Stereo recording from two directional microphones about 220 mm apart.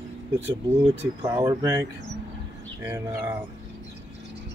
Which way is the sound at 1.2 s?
15° right (ahead or behind).